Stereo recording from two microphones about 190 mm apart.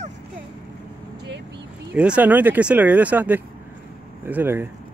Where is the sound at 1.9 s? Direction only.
5° right (ahead or behind).